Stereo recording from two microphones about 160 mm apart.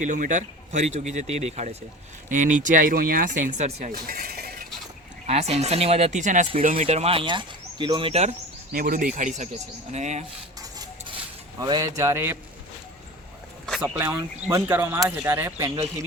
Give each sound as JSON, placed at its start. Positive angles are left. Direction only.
{"t": 0.0, "sound": "speech", "side_deg": -50}
{"t": 3.9, "sound": "a sound", "side_deg": -65}
{"t": 5.2, "sound": "speech", "side_deg": -40}
{"t": 8.7, "sound": "speech", "side_deg": -65}
{"t": 11.6, "sound": "a man's voice", "side_deg": -20}
{"t": 13.7, "sound": "speech", "side_deg": -5}